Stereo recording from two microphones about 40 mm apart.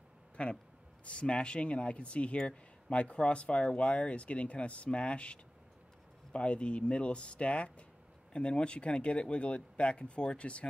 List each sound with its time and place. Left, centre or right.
0.4 s speech: left